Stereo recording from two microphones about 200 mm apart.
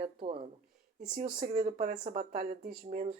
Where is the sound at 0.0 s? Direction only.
30° right (ahead or behind).